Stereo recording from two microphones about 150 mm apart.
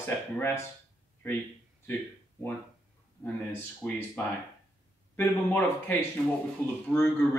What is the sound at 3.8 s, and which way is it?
Speech, 10° left (ahead or behind).